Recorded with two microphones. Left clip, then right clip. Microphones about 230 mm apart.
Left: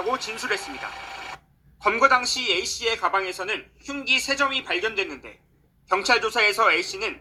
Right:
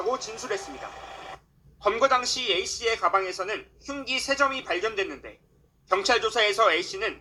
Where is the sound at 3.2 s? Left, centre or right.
Left.